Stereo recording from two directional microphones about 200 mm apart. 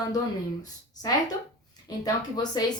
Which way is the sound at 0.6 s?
20° left (ahead or behind).